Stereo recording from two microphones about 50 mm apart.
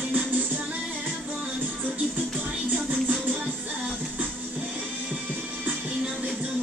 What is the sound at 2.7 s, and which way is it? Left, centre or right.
Music, right.